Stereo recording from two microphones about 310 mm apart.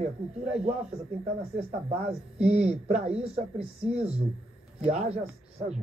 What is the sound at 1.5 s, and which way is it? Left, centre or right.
Speech, centre.